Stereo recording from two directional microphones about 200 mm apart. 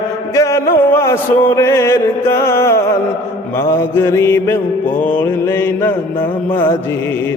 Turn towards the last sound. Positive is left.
turn(degrees=10)  # may be behind; listen again after turning